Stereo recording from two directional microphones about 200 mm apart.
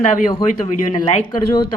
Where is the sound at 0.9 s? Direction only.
25° left (ahead or behind).